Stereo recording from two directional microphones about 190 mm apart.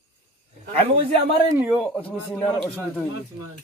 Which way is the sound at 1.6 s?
10° right (ahead or behind).